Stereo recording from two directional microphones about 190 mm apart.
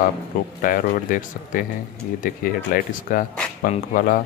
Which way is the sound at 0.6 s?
45° left (ahead or behind).